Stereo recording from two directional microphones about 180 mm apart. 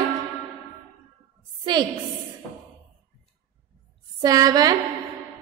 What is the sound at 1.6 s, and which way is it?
Speech, 25° right (ahead or behind).